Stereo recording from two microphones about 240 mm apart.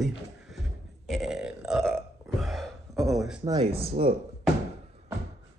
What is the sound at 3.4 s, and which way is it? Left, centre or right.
Speech, centre.